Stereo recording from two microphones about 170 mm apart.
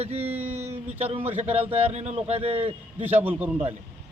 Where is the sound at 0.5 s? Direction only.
40° right (ahead or behind).